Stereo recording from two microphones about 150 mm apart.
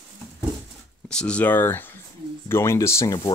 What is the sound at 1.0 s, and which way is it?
Speech, 5° left (ahead or behind).